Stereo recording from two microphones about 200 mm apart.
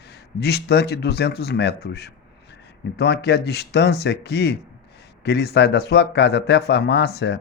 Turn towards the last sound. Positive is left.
turn(degrees=55)  # may be behind; listen again after turning